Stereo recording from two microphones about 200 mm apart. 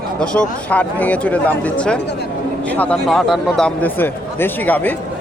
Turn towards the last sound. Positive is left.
turn(degrees=10)  # may be behind; listen again after turning